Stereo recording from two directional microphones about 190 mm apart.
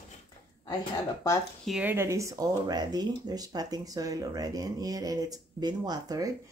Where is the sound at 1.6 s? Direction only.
5° right (ahead or behind).